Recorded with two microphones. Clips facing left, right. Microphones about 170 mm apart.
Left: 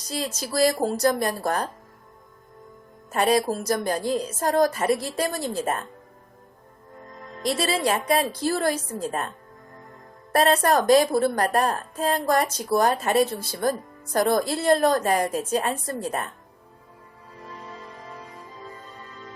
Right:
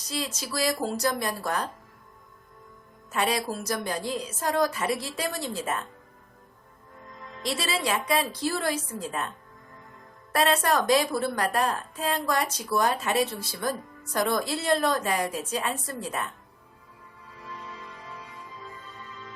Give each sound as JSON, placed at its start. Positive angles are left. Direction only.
{"t": 0.1, "sound": "a woman's voice", "side_deg": 45}
{"t": 3.1, "sound": "a woman's voice", "side_deg": 45}
{"t": 7.2, "sound": "a woman's voice", "side_deg": 40}
{"t": 10.3, "sound": "a woman's voice", "side_deg": 45}
{"t": 17.4, "sound": "music", "side_deg": 40}